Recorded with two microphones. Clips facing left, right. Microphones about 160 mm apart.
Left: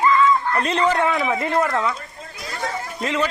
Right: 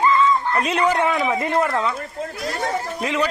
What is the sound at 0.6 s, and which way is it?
A man's voice, 10° right (ahead or behind).